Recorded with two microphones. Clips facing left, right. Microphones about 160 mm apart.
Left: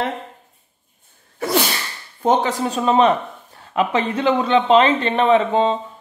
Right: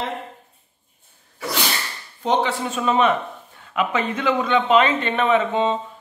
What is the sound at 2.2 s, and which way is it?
Speech, 40° left (ahead or behind).